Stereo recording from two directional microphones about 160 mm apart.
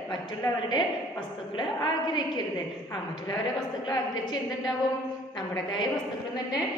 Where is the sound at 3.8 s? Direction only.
25° left (ahead or behind).